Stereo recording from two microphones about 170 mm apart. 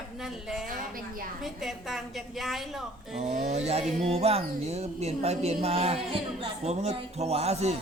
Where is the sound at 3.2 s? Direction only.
40° right (ahead or behind).